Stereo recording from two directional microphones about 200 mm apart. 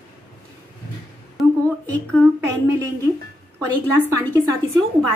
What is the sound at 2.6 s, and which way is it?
A woman's voice, 15° right (ahead or behind).